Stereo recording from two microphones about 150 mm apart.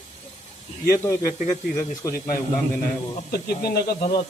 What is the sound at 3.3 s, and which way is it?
Speech, 90° left.